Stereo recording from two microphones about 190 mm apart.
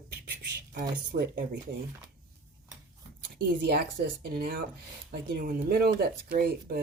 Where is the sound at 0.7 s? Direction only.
50° right (ahead or behind).